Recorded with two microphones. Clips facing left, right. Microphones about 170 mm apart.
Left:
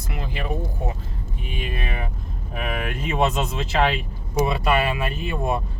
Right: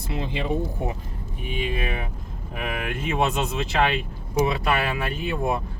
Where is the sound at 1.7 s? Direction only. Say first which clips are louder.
Right 2 dB; 5° right (ahead or behind).